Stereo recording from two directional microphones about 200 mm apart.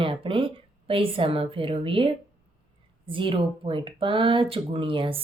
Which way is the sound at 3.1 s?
25° right (ahead or behind).